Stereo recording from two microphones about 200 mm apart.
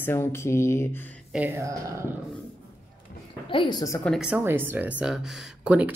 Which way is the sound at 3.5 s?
25° left (ahead or behind).